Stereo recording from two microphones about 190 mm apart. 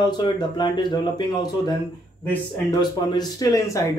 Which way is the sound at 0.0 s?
25° left (ahead or behind).